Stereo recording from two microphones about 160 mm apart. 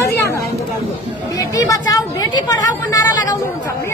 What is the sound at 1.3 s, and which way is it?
Chatter, 20° left (ahead or behind).